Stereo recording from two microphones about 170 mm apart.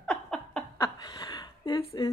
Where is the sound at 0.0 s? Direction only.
5° left (ahead or behind).